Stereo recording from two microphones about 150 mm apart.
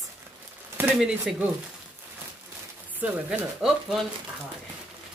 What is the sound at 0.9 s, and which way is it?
Speech, 5° right (ahead or behind).